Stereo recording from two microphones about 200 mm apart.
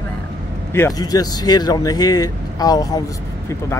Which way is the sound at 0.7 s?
15° left (ahead or behind).